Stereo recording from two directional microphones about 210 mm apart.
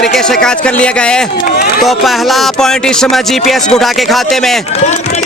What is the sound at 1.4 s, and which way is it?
Speech, 45° left (ahead or behind).